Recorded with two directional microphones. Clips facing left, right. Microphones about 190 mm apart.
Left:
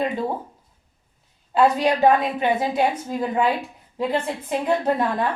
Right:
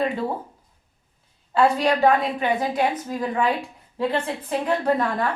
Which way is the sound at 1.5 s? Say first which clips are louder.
Left 1 dB; 20° left (ahead or behind).